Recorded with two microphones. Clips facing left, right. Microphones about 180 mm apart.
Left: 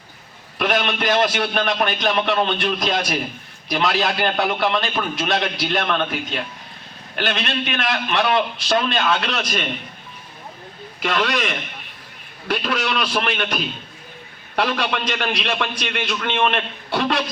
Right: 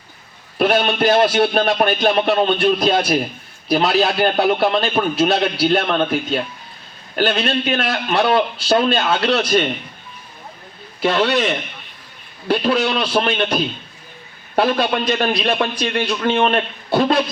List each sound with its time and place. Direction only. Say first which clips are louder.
0.6 s a man's voice: right 5 dB; 30° right (ahead or behind)
11.0 s a man's voice: right 5 dB; 30° right (ahead or behind)
14.5 s a man's voice: right 5 dB; 40° right (ahead or behind)